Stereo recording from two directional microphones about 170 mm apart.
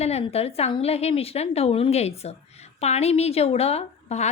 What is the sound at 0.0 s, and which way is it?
A woman's voice, 40° left (ahead or behind).